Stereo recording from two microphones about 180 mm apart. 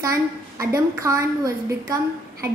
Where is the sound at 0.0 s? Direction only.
20° right (ahead or behind).